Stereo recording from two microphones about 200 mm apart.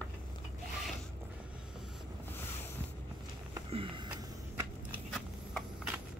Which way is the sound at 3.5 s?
25° right (ahead or behind).